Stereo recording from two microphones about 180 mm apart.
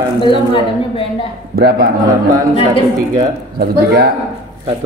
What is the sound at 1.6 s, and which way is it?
Speech, 60° right (ahead or behind).